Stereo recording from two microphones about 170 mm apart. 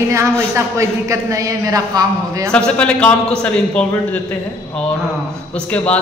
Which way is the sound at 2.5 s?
5° left (ahead or behind).